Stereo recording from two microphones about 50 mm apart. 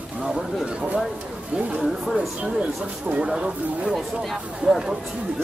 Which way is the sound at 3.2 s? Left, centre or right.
Centre.